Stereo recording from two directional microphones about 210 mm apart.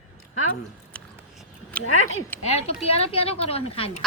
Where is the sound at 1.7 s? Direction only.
5° left (ahead or behind).